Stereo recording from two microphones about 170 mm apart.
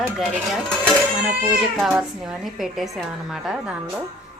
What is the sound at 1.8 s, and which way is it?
A woman's voice, 5° right (ahead or behind).